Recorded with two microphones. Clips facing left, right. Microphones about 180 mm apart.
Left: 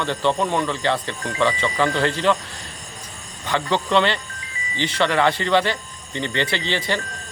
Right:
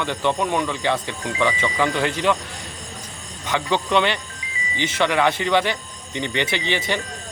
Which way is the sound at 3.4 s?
15° right (ahead or behind).